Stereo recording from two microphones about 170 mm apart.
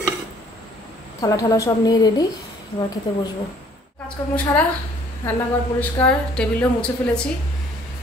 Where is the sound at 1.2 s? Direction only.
20° left (ahead or behind).